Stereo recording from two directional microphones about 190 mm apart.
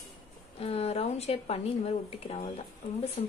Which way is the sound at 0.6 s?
30° left (ahead or behind).